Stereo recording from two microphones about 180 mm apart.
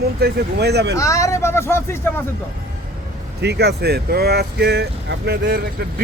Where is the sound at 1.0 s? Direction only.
15° left (ahead or behind).